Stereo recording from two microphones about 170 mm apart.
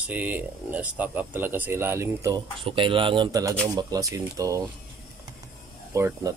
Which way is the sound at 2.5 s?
30° right (ahead or behind).